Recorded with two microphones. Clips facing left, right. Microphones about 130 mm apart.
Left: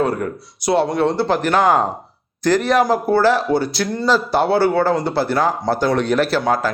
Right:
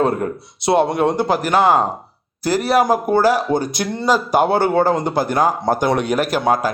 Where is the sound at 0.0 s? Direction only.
25° right (ahead or behind).